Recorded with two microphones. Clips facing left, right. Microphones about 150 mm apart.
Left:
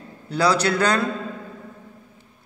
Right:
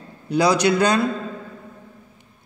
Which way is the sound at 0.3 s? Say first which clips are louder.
Right 3 dB; 15° right (ahead or behind).